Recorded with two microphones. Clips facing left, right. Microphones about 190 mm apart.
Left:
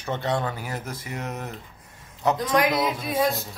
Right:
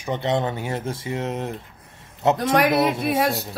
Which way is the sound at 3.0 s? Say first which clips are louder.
Right 3 dB; 75° right (ahead or behind).